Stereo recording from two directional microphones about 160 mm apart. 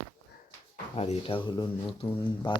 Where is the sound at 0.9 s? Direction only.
40° left (ahead or behind).